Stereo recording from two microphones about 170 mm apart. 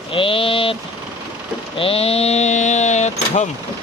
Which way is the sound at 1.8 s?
35° left (ahead or behind).